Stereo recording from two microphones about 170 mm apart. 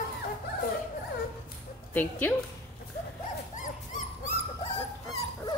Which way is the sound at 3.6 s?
45° left (ahead or behind).